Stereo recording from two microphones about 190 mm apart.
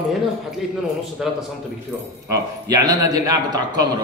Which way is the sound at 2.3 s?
20° right (ahead or behind).